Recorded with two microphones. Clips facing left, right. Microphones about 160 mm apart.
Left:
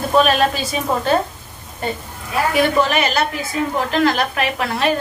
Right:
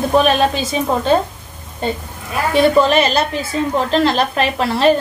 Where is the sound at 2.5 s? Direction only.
30° right (ahead or behind).